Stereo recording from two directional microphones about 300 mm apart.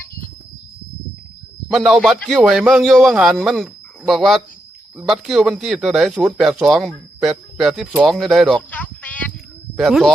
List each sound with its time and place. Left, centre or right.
1.7 s speech: centre